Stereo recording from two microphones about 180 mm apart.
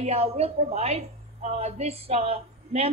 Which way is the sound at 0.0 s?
35° right (ahead or behind).